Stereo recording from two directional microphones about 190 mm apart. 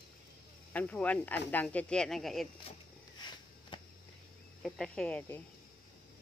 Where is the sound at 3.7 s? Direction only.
25° left (ahead or behind).